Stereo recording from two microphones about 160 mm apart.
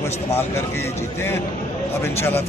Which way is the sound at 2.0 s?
15° left (ahead or behind).